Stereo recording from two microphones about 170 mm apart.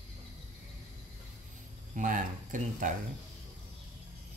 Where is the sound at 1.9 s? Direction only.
50° right (ahead or behind).